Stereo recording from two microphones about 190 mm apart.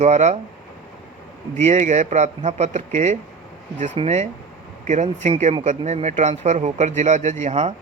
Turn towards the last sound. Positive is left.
turn(degrees=-35)  # may be behind; listen again after turning